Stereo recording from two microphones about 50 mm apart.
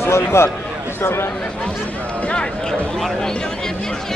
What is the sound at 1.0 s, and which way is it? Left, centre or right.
Speech, left.